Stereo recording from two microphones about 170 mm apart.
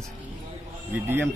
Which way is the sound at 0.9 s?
10° right (ahead or behind).